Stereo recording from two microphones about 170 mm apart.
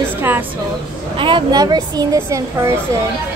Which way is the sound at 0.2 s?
10° right (ahead or behind).